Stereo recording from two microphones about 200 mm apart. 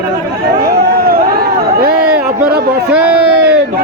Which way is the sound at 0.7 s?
50° right (ahead or behind).